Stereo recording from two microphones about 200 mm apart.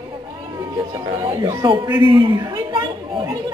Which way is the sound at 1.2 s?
20° right (ahead or behind).